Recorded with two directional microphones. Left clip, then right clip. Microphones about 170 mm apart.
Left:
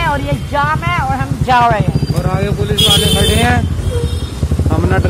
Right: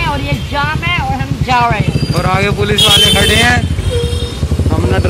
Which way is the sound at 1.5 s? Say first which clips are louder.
Left 1 dB; 5° left (ahead or behind).